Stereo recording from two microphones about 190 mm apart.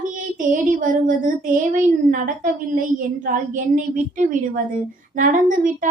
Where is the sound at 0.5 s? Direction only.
45° right (ahead or behind).